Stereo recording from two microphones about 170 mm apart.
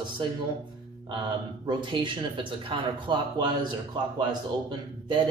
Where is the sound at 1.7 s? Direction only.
30° right (ahead or behind).